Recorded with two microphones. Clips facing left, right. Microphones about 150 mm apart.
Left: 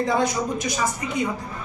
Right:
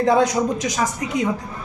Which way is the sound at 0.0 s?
90° right.